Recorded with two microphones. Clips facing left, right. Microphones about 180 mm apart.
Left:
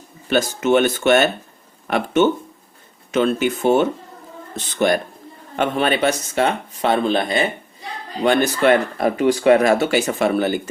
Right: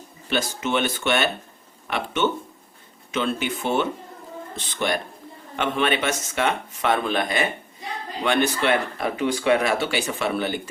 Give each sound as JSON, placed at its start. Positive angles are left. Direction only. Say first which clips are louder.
{"t": 0.3, "sound": "speech", "louder": "left 8 dB", "side_deg": 45}